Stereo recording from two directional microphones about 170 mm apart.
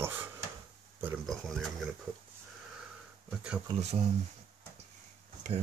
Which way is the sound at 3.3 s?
5° right (ahead or behind).